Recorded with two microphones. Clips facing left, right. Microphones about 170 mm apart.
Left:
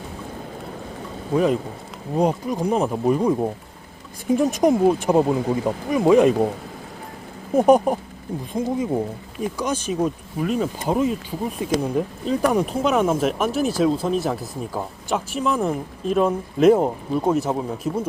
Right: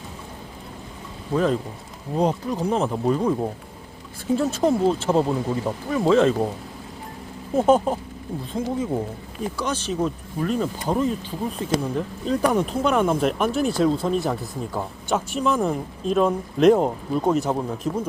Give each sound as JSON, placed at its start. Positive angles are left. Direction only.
{"t": 1.3, "sound": "speech", "side_deg": 10}
{"t": 7.5, "sound": "speech", "side_deg": 15}